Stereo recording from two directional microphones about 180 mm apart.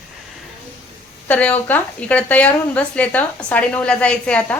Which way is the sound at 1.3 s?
10° left (ahead or behind).